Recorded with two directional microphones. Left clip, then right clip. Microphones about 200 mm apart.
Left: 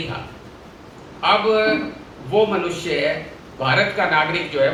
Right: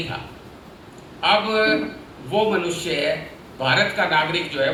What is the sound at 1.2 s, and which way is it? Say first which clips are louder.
A man's voice: left 2 dB; 20° right (ahead or behind).